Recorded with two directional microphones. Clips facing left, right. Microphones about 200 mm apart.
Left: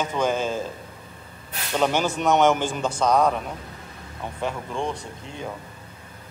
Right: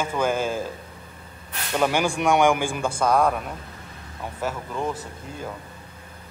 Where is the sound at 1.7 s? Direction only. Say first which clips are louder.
Even; 10° right (ahead or behind).